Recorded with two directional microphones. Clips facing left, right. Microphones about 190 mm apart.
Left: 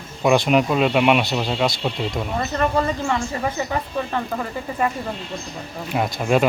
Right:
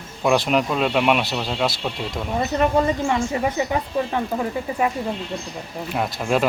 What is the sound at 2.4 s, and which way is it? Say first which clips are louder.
Speech: right 3 dB; 15° right (ahead or behind).